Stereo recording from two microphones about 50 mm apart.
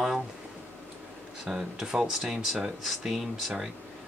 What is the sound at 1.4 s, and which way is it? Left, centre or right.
Speech, centre.